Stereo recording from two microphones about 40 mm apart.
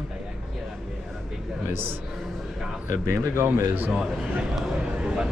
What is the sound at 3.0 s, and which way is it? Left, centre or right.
Speech, right.